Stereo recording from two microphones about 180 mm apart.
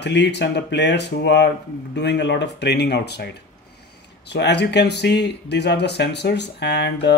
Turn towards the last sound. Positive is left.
turn(degrees=70)  # may be behind; listen again after turning